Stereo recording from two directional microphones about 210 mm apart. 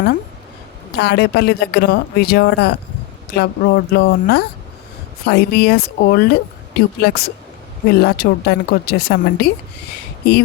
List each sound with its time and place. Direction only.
0.9 s speech: 50° left (ahead or behind)